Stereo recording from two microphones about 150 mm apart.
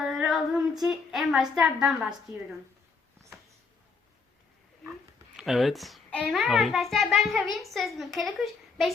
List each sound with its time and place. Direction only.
0.0 s speech: centre (ahead or behind)
5.4 s speech: centre (ahead or behind)